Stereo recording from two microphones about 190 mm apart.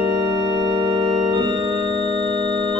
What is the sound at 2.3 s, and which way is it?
Organ, 25° right (ahead or behind).